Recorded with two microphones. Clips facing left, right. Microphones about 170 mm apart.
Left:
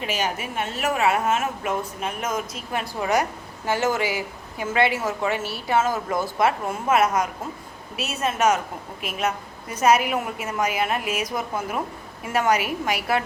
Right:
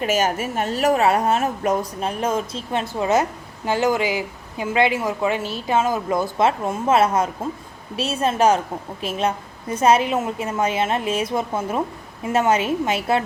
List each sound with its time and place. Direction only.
0.0 s a woman's voice: 45° right (ahead or behind); by 13.2 s 25° right (ahead or behind)